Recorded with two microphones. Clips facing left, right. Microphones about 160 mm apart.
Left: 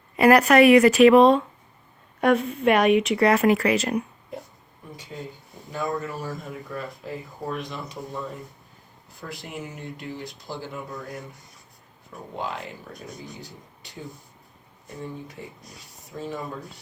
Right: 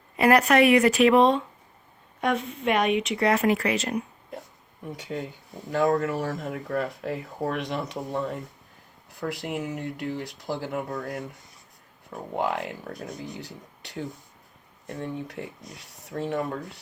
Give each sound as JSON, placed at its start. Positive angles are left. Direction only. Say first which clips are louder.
{"t": 0.2, "sound": "speech", "louder": "left 3 dB", "side_deg": 75}
{"t": 4.9, "sound": "speech", "louder": "right 4 dB", "side_deg": -75}
{"t": 12.4, "sound": "speech", "louder": "right 5 dB", "side_deg": -65}
{"t": 15.0, "sound": "speech", "louder": "right 3 dB", "side_deg": -70}